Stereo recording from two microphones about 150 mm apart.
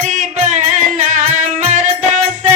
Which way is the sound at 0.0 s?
55° right (ahead or behind).